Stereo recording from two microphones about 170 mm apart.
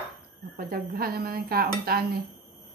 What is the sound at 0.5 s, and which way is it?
Speech, 60° right (ahead or behind).